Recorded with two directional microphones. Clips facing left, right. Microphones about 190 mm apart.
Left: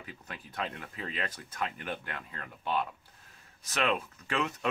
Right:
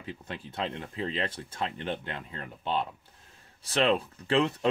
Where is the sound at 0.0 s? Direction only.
25° right (ahead or behind).